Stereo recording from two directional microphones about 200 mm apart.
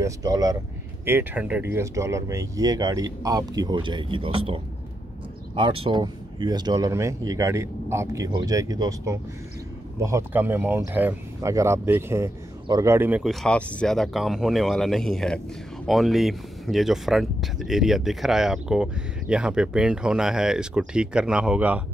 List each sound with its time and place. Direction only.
0.0 s speech: 20° right (ahead or behind)
5.6 s speech: 25° right (ahead or behind); by 21.8 s 5° right (ahead or behind)